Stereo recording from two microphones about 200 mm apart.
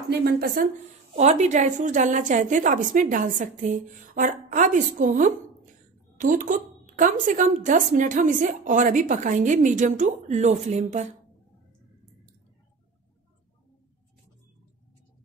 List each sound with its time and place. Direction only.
0.1 s speech: 50° right (ahead or behind)
1.1 s speech: 35° right (ahead or behind)